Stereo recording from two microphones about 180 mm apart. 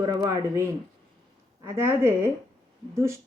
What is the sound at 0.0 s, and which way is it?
Speech, 20° right (ahead or behind).